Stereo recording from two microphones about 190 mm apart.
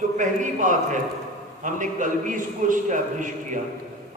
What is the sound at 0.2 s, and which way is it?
A man's voice, 40° right (ahead or behind).